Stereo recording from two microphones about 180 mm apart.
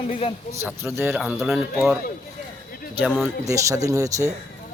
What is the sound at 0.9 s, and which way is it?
Speech, 5° right (ahead or behind).